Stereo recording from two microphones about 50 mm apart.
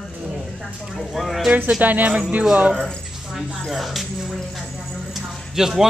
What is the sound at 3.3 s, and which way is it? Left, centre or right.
Speech, centre.